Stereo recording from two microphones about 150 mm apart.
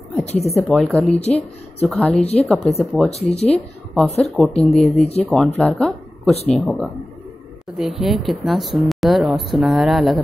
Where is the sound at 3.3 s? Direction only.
45° left (ahead or behind).